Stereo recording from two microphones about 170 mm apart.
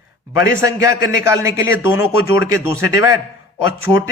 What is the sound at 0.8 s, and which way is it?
A man's voice, 15° right (ahead or behind).